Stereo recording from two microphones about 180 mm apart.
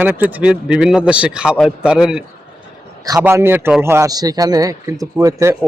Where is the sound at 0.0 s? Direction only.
10° right (ahead or behind).